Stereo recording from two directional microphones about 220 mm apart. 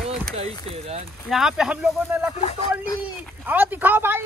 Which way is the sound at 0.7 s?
30° right (ahead or behind).